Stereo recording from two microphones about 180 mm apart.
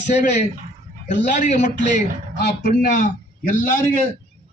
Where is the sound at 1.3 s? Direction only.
45° left (ahead or behind).